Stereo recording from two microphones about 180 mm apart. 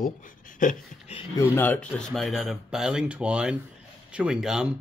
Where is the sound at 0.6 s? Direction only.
45° left (ahead or behind).